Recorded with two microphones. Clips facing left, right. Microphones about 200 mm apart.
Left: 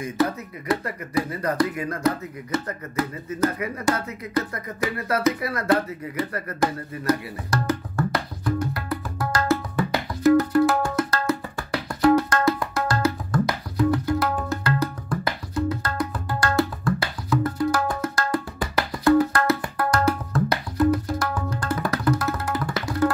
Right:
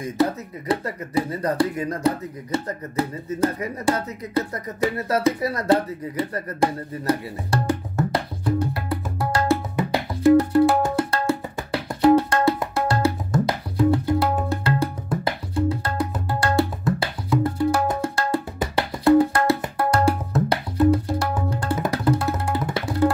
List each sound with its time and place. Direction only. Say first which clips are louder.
0.2 s speech: right 2 dB; 30° right (ahead or behind)
7.6 s music: even; 30° right (ahead or behind)